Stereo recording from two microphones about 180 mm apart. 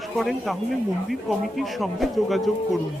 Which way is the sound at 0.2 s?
Centre (ahead or behind).